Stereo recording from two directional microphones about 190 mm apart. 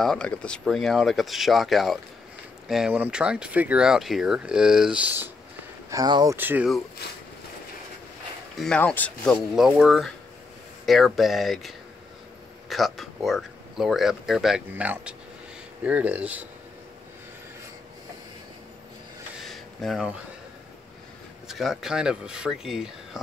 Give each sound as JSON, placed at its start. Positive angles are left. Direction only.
{"t": 0.0, "sound": "speech", "side_deg": 5}
{"t": 5.9, "sound": "speech", "side_deg": -20}
{"t": 6.3, "sound": "speech", "side_deg": -10}
{"t": 8.5, "sound": "speech", "side_deg": 5}
{"t": 19.4, "sound": "a sound", "side_deg": 0}
{"t": 21.5, "sound": "speech", "side_deg": 0}